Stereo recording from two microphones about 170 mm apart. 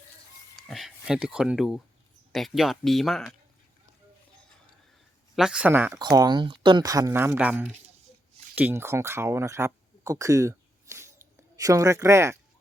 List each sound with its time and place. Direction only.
0.5 s speech: centre (ahead or behind)
5.4 s speech: 5° right (ahead or behind)
6.0 s speech: 25° right (ahead or behind)